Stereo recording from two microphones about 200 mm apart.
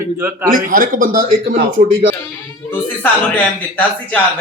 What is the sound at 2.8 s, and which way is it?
Speech, 10° left (ahead or behind).